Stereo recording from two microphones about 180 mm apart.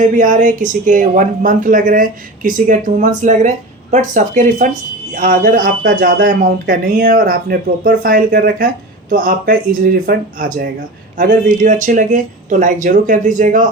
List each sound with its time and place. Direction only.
0.0 s speech: 45° right (ahead or behind)